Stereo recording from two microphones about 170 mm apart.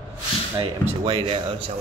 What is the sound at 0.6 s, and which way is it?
Mantra, 35° right (ahead or behind).